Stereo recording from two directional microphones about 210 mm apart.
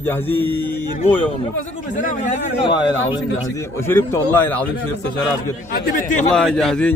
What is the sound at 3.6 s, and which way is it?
A man's voice, 10° left (ahead or behind).